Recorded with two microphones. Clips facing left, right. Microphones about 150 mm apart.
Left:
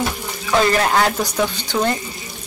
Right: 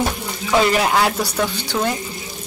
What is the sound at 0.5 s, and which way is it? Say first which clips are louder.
Speech: even; 10° right (ahead or behind).